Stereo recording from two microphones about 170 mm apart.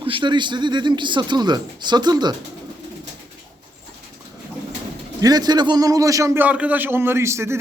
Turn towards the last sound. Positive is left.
turn(degrees=-15)  # may be behind; listen again after turning